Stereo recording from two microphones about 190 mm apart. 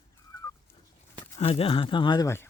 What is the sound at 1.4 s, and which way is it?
Speech, 30° left (ahead or behind).